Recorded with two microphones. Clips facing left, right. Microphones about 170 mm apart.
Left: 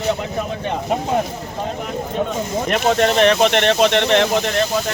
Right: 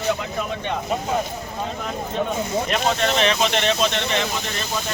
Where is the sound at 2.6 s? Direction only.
55° left (ahead or behind).